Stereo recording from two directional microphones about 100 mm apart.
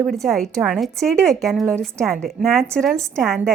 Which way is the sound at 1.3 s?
Centre (ahead or behind).